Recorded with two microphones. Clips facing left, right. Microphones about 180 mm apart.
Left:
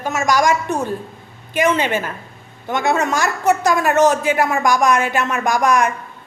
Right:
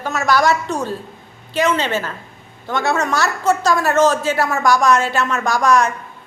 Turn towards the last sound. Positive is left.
turn(degrees=15)  # may be behind; listen again after turning